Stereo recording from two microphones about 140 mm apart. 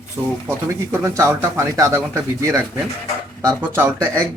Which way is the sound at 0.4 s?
20° right (ahead or behind).